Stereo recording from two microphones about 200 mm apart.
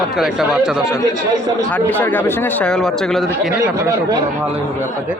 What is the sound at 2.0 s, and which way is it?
Speech, 10° left (ahead or behind).